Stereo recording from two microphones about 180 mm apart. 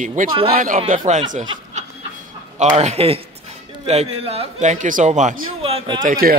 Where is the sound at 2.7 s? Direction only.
35° right (ahead or behind).